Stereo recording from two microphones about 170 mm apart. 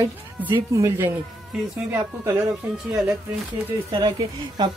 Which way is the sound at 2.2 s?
15° right (ahead or behind).